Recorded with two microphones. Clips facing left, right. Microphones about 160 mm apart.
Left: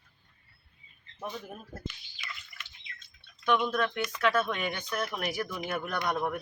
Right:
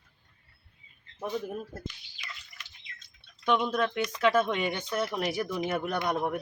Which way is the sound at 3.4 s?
20° right (ahead or behind).